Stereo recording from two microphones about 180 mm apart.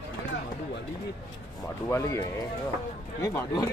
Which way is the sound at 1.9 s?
15° left (ahead or behind).